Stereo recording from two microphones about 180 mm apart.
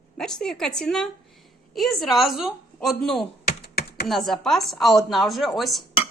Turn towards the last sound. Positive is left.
turn(degrees=0)  # may be behind; listen again after turning